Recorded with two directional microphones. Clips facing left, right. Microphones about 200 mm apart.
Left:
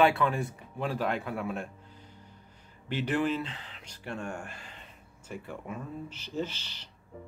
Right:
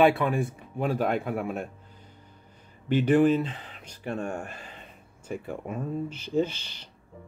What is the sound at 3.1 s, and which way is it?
Speech, 50° right (ahead or behind).